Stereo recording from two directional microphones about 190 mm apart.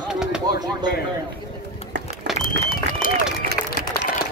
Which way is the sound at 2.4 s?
45° left (ahead or behind).